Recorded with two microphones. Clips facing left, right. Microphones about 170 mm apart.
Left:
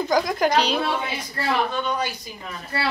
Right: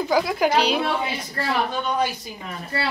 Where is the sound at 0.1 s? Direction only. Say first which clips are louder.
Even; 5° right (ahead or behind).